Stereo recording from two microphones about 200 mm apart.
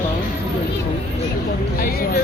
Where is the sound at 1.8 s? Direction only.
50° left (ahead or behind).